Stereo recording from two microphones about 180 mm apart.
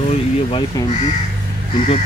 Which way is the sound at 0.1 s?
30° left (ahead or behind).